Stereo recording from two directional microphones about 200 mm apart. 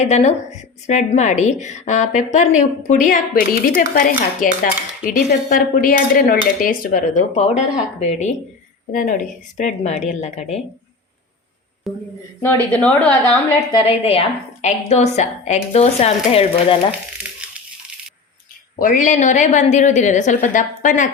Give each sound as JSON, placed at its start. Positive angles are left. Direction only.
{"t": 0.0, "sound": "a woman's voice", "side_deg": 35}
{"t": 11.9, "sound": "a woman's voice", "side_deg": 0}
{"t": 13.7, "sound": "a woman's voice", "side_deg": 25}
{"t": 18.8, "sound": "a woman's voice", "side_deg": 40}